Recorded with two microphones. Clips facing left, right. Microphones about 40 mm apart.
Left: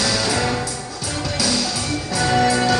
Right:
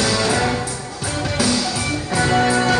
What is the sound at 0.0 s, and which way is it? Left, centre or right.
Music, right.